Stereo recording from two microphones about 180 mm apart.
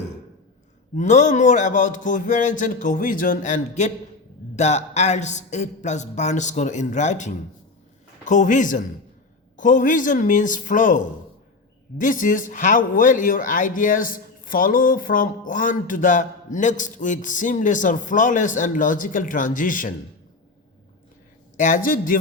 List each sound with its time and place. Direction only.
0.9 s speech: 40° left (ahead or behind)
21.5 s speech: 45° left (ahead or behind)